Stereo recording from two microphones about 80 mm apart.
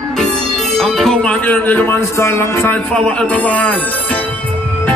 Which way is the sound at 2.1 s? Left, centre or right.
Left.